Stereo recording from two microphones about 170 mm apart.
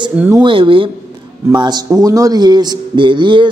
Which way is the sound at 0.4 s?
30° right (ahead or behind).